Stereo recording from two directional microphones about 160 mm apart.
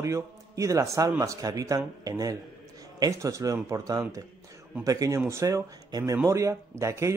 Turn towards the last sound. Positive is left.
turn(degrees=-20)  # may be behind; listen again after turning